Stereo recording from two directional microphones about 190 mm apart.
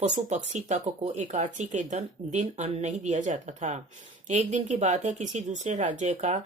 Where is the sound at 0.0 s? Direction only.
40° right (ahead or behind).